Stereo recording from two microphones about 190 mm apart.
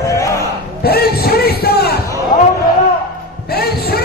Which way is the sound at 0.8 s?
55° left (ahead or behind).